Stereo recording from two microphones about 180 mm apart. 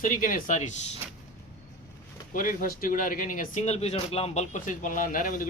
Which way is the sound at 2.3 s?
50° left (ahead or behind).